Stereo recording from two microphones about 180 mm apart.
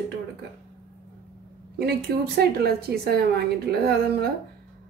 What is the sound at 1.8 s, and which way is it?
A woman's voice, 60° right (ahead or behind).